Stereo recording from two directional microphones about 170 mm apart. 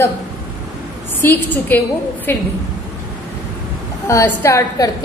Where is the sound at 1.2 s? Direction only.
10° left (ahead or behind).